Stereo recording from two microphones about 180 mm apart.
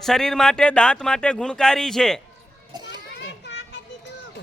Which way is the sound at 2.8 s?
70° left (ahead or behind).